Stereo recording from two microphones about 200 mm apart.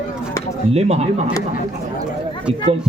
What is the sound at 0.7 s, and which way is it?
Speech, 30° right (ahead or behind).